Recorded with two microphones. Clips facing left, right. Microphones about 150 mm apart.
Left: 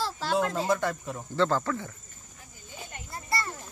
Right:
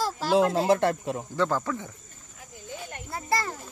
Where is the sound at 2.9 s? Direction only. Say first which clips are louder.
Right 5 dB; 80° right.